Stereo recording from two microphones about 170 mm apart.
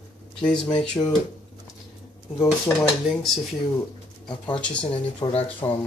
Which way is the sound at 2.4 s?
5° left (ahead or behind).